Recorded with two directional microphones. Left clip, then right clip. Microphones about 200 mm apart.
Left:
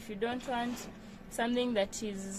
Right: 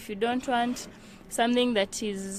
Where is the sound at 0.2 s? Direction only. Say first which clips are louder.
Right 8 dB; 45° right (ahead or behind).